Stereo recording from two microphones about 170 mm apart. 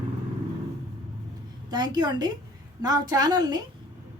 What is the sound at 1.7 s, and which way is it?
A woman's voice, 25° right (ahead or behind).